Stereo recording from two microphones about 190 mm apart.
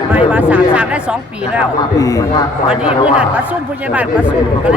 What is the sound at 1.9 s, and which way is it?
Speech, 15° left (ahead or behind).